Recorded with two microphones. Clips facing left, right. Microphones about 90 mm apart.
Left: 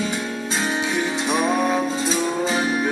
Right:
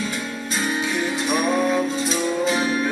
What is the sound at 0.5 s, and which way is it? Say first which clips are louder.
Music: even; 25° left (ahead or behind).